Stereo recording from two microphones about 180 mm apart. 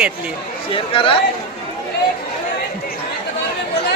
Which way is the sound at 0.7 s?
30° left (ahead or behind).